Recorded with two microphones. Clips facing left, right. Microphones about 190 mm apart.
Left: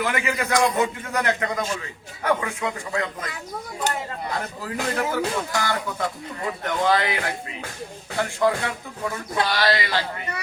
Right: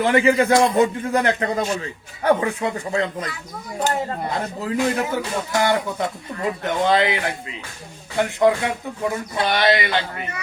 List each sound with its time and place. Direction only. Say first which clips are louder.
0.0 s a man's voice: right 9 dB; 30° right (ahead or behind)
4.3 s speech: right 5 dB; 25° right (ahead or behind)